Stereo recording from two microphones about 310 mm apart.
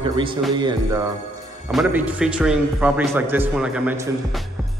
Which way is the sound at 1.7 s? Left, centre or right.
Centre.